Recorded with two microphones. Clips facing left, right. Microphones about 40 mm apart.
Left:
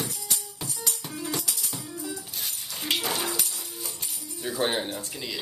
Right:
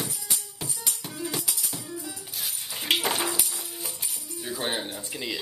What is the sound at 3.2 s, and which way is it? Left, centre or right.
Music, centre.